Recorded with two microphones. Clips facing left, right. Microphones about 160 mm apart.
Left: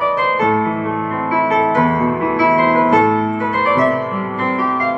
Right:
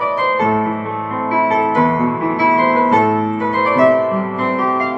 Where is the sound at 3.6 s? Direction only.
20° right (ahead or behind).